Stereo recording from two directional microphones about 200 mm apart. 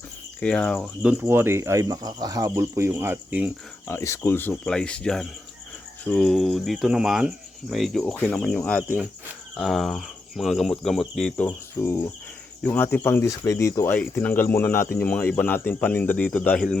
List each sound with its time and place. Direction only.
0.3 s speech: 5° left (ahead or behind)
1.1 s speech: 10° right (ahead or behind)
3.8 s speech: 15° left (ahead or behind)
11.4 s speech: 15° left (ahead or behind)